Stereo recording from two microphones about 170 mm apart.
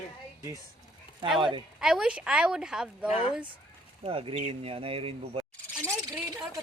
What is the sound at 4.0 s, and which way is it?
Speech, 30° right (ahead or behind).